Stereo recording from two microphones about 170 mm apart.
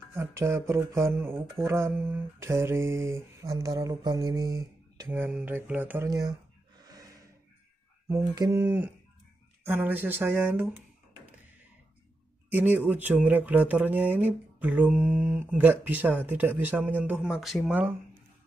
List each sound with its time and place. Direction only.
0.1 s speech: 15° right (ahead or behind)
6.0 s speech: 20° right (ahead or behind)
6.9 s gasp: 20° right (ahead or behind)
8.4 s speech: 15° right (ahead or behind)
12.4 s speech: 10° right (ahead or behind)